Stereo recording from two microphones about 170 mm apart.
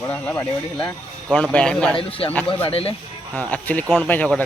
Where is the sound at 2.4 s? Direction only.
35° left (ahead or behind).